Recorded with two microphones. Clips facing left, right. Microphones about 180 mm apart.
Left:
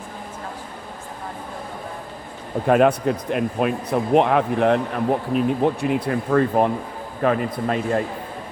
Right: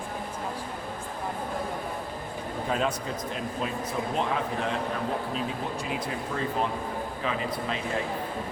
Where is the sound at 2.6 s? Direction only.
65° left (ahead or behind).